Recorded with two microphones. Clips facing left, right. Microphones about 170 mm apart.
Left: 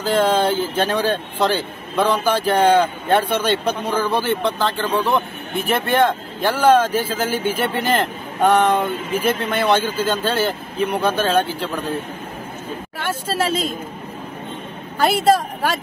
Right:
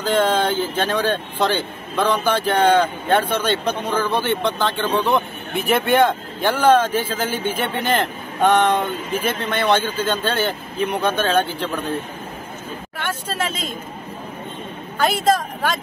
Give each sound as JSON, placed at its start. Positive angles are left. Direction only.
{"t": 0.0, "sound": "speech", "side_deg": 10}
{"t": 13.4, "sound": "a man's voice", "side_deg": 35}
{"t": 15.0, "sound": "a man's voice", "side_deg": 10}